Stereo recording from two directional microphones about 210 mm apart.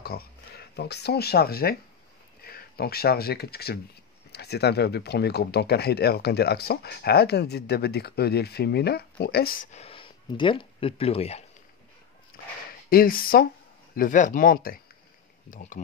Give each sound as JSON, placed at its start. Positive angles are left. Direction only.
{"t": 0.0, "sound": "speech", "side_deg": 45}
{"t": 12.3, "sound": "a sound", "side_deg": 45}
{"t": 12.9, "sound": "speech", "side_deg": 45}